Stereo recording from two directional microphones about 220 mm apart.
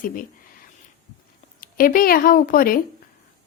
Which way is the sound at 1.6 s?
40° left (ahead or behind).